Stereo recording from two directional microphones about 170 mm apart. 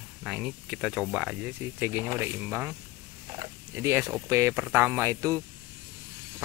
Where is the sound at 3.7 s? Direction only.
15° right (ahead or behind).